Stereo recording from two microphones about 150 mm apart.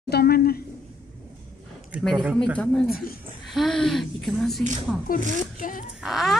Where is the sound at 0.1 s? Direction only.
90° left.